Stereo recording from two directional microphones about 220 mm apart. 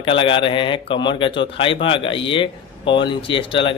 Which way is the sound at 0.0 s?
25° left (ahead or behind).